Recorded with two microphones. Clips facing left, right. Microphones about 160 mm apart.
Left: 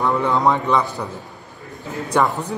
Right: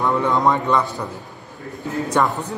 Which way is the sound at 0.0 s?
5° left (ahead or behind).